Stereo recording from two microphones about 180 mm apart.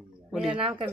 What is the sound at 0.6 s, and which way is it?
Speech, 30° right (ahead or behind).